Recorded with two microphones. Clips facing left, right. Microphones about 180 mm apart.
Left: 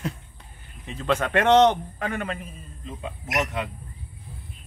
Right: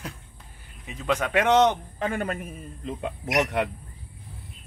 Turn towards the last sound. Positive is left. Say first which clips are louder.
# right 3 dB
turn(degrees=-65)  # may be behind; listen again after turning